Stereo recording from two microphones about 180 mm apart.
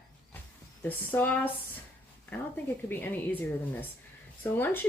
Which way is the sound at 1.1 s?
10° left (ahead or behind).